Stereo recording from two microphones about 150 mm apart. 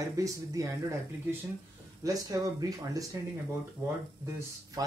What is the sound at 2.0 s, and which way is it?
Speech, 25° right (ahead or behind).